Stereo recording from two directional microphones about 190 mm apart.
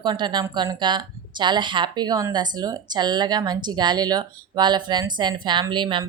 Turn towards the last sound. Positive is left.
turn(degrees=-25)  # may be behind; listen again after turning